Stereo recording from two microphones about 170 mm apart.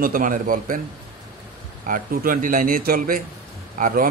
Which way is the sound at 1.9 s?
55° right (ahead or behind).